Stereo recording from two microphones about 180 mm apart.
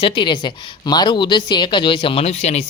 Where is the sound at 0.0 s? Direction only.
30° left (ahead or behind).